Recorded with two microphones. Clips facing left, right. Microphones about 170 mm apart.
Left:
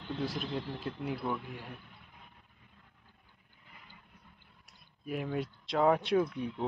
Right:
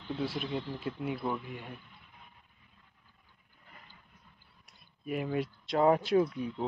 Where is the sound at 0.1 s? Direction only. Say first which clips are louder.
Right 1 dB; centre (ahead or behind).